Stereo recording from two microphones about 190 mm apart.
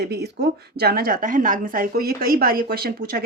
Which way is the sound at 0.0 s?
60° right (ahead or behind).